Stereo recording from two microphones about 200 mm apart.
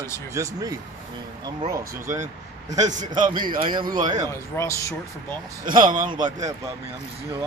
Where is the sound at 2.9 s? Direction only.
40° right (ahead or behind).